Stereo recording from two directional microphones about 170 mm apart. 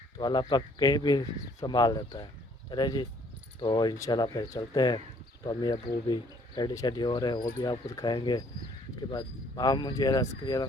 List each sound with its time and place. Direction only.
0.2 s speech: 25° left (ahead or behind)